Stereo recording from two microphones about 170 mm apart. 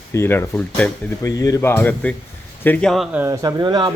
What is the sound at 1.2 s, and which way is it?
Speech, 20° left (ahead or behind).